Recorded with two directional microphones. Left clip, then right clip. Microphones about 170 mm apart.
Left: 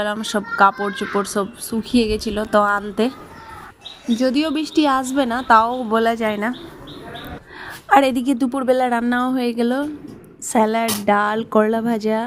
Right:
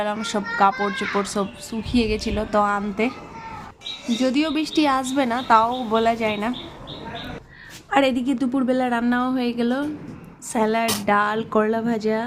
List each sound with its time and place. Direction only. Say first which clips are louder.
0.0 s a child's voice: left 2 dB; 25° left (ahead or behind)
4.2 s a child's voice: left 2 dB; 25° left (ahead or behind)
7.9 s a woman's voice: left 5 dB; 35° left (ahead or behind)